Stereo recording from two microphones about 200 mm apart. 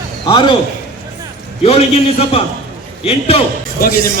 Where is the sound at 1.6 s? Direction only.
30° left (ahead or behind).